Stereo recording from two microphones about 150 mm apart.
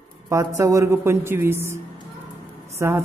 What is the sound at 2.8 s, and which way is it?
Speech, 15° right (ahead or behind).